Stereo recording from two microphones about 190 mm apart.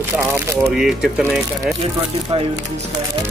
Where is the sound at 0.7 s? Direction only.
Centre (ahead or behind).